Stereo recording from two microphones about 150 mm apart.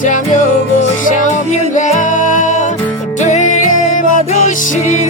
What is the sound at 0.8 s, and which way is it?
Music, 55° left (ahead or behind).